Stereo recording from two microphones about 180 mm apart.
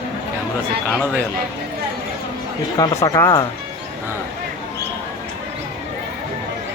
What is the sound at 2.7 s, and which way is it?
Speech, 20° left (ahead or behind).